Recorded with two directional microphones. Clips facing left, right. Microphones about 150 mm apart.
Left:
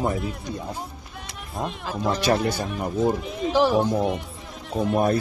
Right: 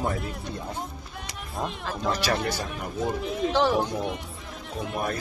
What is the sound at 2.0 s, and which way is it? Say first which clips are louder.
Speech: left 5 dB; 25° left (ahead or behind).